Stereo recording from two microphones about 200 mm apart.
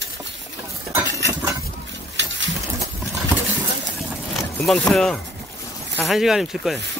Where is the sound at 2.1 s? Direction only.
65° right (ahead or behind).